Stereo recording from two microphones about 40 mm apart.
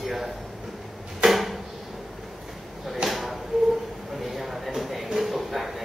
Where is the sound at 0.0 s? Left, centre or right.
Centre.